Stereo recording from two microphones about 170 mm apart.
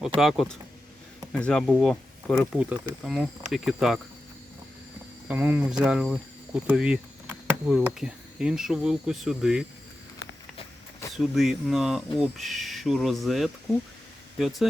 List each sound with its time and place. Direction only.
0.2 s speech: centre (ahead or behind)
5.3 s speech: 10° right (ahead or behind)
11.1 s speech: centre (ahead or behind)